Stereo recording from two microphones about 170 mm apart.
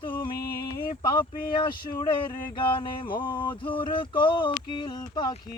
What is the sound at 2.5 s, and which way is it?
Speech, 30° left (ahead or behind).